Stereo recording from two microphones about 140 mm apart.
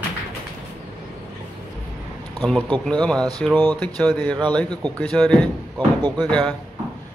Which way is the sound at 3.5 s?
15° left (ahead or behind).